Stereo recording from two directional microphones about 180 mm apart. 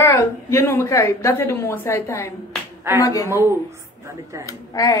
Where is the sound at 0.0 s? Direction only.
15° left (ahead or behind).